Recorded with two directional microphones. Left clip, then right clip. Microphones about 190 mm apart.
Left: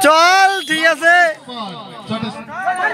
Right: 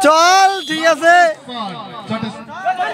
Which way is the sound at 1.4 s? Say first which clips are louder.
Right 2 dB; 55° left (ahead or behind).